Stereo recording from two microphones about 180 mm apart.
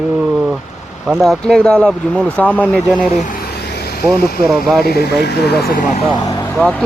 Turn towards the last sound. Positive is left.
turn(degrees=5)  # may be behind; listen again after turning